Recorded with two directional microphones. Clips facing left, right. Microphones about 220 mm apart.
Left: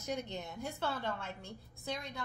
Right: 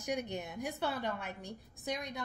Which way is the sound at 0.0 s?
15° right (ahead or behind).